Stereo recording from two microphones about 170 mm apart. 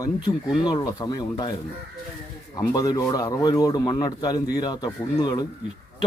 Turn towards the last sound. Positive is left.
turn(degrees=25)  # may be behind; listen again after turning